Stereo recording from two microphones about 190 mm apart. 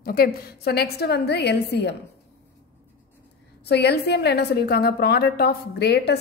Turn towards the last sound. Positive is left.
turn(degrees=60)  # may be behind; listen again after turning